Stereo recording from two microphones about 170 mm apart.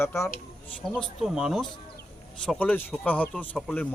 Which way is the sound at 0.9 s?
5° right (ahead or behind).